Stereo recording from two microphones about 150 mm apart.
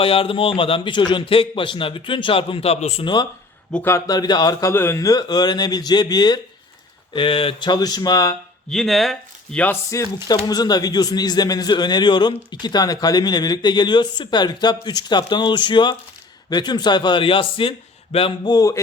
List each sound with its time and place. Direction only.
0.0 s a man's voice: 35° left (ahead or behind)
3.8 s speech: 25° left (ahead or behind)
4.7 s speech: 15° left (ahead or behind)
8.7 s speech: centre (ahead or behind)
9.9 s speech: 20° left (ahead or behind)